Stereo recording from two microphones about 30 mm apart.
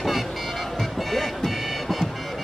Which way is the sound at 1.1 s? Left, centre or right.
Centre.